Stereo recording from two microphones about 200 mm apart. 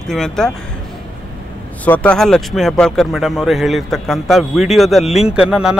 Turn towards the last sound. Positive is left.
turn(degrees=-5)  # may be behind; listen again after turning